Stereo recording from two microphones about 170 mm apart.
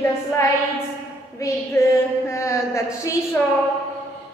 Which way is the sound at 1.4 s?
15° left (ahead or behind).